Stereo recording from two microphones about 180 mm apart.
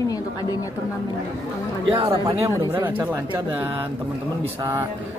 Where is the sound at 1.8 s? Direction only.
30° right (ahead or behind).